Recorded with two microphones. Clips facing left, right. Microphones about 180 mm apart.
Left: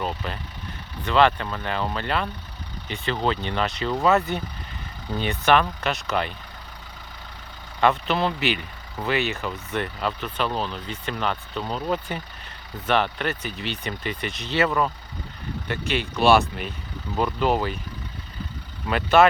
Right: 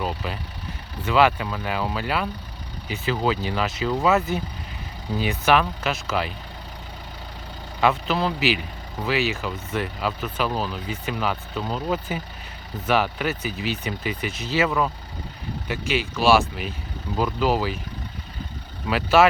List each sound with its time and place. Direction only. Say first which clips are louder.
0.0 s vehicle: right 1 dB; 5° right (ahead or behind)
1.0 s speech: even; 5° right (ahead or behind)
7.8 s speech: even; centre (ahead or behind)
18.9 s speech: even; 5° right (ahead or behind)